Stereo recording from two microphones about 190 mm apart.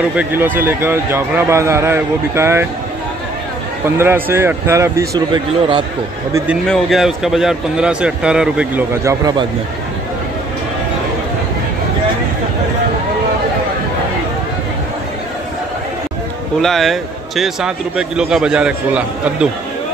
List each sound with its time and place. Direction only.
0.1 s speech: 10° right (ahead or behind)
3.8 s speech: 10° right (ahead or behind)
6.3 s a man's voice: 5° right (ahead or behind)
9.0 s speech: 20° right (ahead or behind)
16.6 s a man's voice: centre (ahead or behind)